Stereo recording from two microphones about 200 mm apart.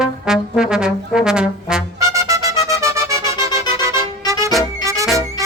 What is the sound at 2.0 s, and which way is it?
Music, 15° right (ahead or behind).